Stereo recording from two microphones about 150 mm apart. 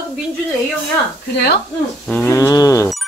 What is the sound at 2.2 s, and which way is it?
Cricket, 20° left (ahead or behind).